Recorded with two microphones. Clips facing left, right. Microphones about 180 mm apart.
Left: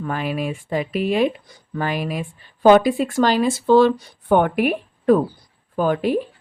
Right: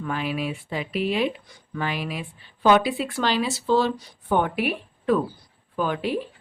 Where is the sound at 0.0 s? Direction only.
45° left (ahead or behind).